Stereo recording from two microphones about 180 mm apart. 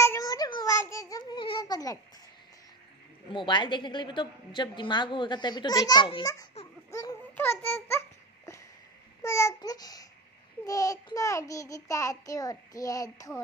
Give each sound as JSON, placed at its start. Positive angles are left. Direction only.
{"t": 0.0, "sound": "a sound", "side_deg": 20}
{"t": 3.3, "sound": "a woman's voice", "side_deg": 25}
{"t": 6.9, "sound": "babbling", "side_deg": 20}
{"t": 9.2, "sound": "a woman's voice", "side_deg": 15}